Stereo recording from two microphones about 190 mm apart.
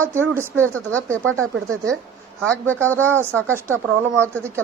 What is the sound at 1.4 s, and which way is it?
Speech, 15° right (ahead or behind).